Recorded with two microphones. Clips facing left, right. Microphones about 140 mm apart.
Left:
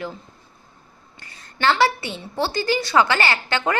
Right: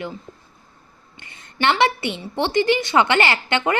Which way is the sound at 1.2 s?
20° right (ahead or behind).